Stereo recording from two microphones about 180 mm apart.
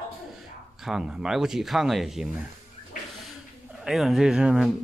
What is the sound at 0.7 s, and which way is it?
Speech, centre (ahead or behind).